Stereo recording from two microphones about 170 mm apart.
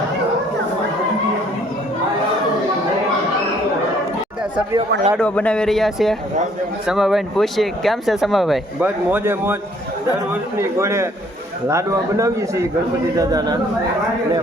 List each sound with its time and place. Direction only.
5.2 s speech: 10° left (ahead or behind)
9.0 s speech: 10° right (ahead or behind)
10.6 s a man's voice: 15° right (ahead or behind)